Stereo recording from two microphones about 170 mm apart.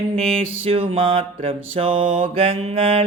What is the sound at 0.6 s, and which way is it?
Mantra, 35° right (ahead or behind).